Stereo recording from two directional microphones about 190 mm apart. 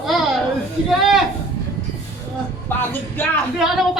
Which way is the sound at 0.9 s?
Centre (ahead or behind).